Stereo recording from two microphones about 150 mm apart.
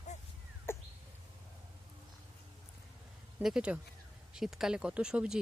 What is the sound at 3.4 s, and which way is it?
Speech, 5° right (ahead or behind).